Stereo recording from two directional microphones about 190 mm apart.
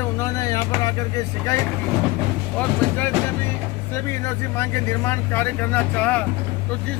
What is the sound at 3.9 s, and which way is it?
Speech, 15° left (ahead or behind).